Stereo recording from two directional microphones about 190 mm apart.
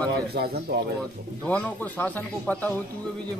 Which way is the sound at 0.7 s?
60° right (ahead or behind).